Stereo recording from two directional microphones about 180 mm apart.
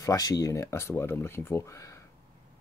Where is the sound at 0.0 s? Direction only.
20° left (ahead or behind).